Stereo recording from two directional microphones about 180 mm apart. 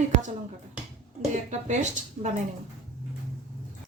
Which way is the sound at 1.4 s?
40° right (ahead or behind).